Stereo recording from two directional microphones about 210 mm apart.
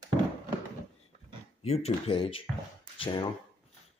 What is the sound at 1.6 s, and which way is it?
Speech, 30° left (ahead or behind).